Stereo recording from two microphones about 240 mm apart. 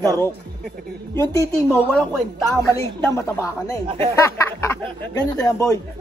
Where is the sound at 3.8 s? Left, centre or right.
Right.